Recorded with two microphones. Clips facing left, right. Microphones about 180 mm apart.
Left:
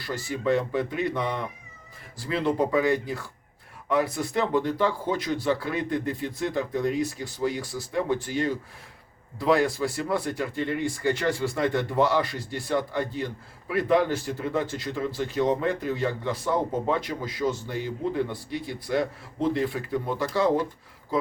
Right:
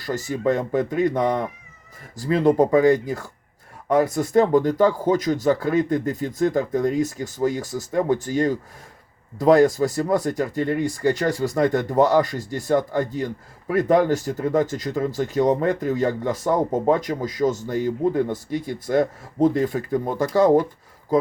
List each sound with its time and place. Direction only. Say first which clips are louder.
0.0 s speech: right 5 dB; 45° right (ahead or behind)